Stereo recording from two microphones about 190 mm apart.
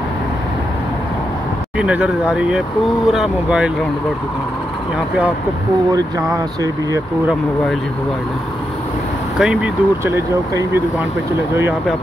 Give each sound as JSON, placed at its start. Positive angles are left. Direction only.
{"t": 1.8, "sound": "speech", "side_deg": -5}
{"t": 5.9, "sound": "speech", "side_deg": -20}
{"t": 9.4, "sound": "speech", "side_deg": -5}